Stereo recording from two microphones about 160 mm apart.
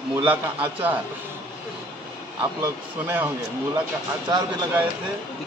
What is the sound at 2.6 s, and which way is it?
Speech, 15° right (ahead or behind).